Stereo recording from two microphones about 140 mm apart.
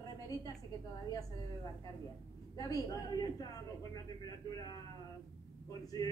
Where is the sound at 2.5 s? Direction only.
25° left (ahead or behind).